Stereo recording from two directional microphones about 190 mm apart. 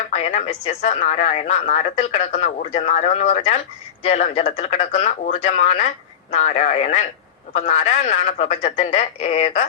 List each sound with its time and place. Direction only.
0.1 s speech: 35° left (ahead or behind)